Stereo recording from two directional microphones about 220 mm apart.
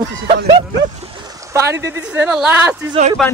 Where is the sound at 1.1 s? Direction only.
15° right (ahead or behind).